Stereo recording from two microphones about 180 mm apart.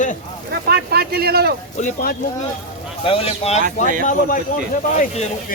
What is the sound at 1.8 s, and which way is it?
Speech, 45° left (ahead or behind).